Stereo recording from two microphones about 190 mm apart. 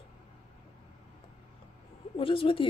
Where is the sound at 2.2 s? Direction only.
30° left (ahead or behind).